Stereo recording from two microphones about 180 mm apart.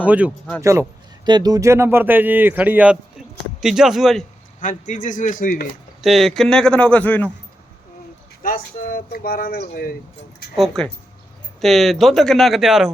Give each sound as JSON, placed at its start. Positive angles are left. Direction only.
{"t": 0.0, "sound": "a man's voice", "side_deg": -10}
{"t": 0.6, "sound": "a man's voice", "side_deg": -15}
{"t": 4.6, "sound": "a man's voice", "side_deg": 45}
{"t": 6.0, "sound": "speech", "side_deg": 0}
{"t": 8.4, "sound": "speech", "side_deg": 50}
{"t": 10.6, "sound": "speech", "side_deg": 5}